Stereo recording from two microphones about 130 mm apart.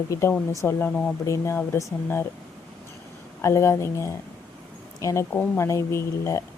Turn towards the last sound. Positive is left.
turn(degrees=20)  # may be behind; listen again after turning